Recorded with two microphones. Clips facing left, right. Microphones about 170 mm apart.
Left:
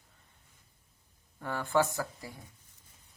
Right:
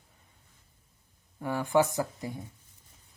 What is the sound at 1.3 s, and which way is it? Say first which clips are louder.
Speech: right 4 dB; 15° right (ahead or behind).